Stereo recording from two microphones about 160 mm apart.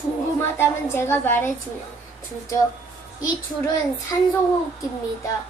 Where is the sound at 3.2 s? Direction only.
20° left (ahead or behind).